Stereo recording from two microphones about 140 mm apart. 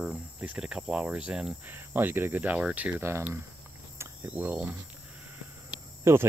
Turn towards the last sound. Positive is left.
turn(degrees=-20)  # may be behind; listen again after turning